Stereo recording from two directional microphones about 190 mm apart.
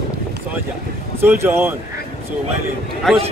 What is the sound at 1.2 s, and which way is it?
Speech, 10° right (ahead or behind).